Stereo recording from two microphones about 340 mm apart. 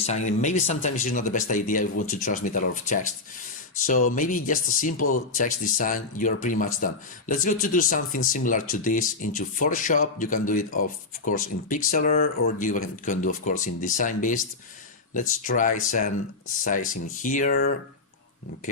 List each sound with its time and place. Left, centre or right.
0.0 s speech: centre
4.9 s speech: left
5.4 s speech: left